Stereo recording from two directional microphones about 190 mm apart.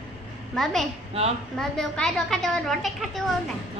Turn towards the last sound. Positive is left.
turn(degrees=0)  # may be behind; listen again after turning